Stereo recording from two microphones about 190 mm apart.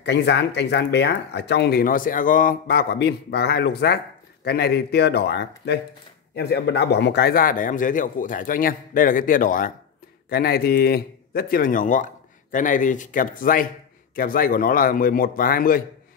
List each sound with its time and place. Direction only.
0.0 s a man's voice: 65° left (ahead or behind)